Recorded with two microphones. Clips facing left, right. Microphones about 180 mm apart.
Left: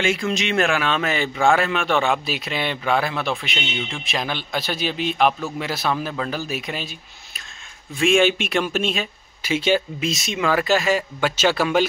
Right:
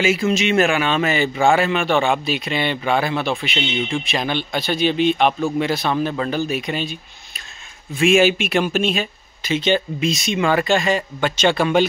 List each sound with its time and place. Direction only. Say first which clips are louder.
0.0 s speech: right 4 dB; 5° right (ahead or behind)